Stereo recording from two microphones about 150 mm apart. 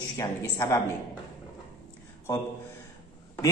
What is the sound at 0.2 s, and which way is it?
Speech, 20° left (ahead or behind).